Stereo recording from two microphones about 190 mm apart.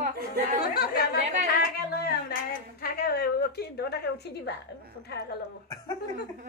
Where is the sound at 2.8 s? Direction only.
55° left (ahead or behind).